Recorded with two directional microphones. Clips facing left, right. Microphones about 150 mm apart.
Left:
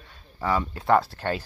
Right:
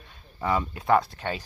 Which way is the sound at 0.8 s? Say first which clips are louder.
Left 1 dB; centre (ahead or behind).